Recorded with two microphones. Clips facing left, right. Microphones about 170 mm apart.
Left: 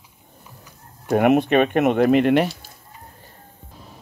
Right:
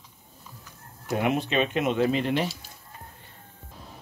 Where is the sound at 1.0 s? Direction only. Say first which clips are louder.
Left 9 dB; 60° left (ahead or behind).